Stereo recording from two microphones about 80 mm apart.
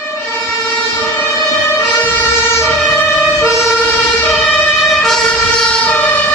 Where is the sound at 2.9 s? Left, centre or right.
Centre.